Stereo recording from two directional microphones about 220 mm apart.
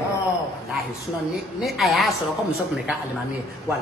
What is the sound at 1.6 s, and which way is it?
Speech, centre (ahead or behind).